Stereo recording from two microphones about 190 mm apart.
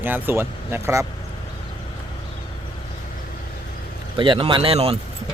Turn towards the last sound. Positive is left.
turn(degrees=-30)  # may be behind; listen again after turning